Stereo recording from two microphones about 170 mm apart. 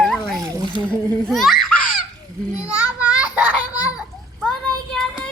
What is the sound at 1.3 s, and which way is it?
Speech, centre (ahead or behind).